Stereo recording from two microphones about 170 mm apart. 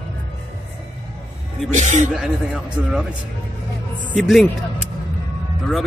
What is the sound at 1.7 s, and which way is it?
Speech, 45° right (ahead or behind).